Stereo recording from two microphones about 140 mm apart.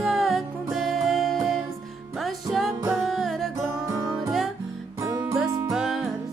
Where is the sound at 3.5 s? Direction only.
25° right (ahead or behind).